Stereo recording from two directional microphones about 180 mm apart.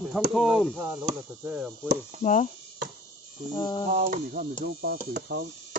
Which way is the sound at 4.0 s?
50° right (ahead or behind).